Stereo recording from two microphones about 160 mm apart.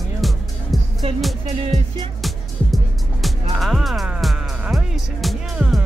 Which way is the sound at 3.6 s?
Centre (ahead or behind).